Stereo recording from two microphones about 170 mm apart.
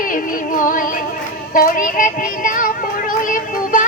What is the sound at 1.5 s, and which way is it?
Child singing, 55° left (ahead or behind).